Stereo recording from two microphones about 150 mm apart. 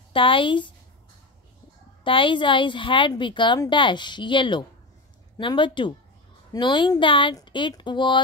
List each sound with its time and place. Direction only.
0.1 s a woman's voice: 35° left (ahead or behind)
2.0 s a woman's voice: 35° left (ahead or behind)